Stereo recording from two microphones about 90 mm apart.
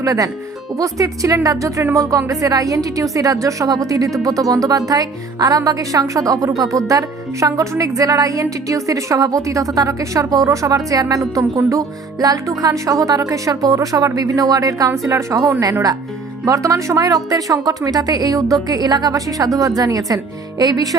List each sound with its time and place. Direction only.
0.0 s speech: 40° right (ahead or behind)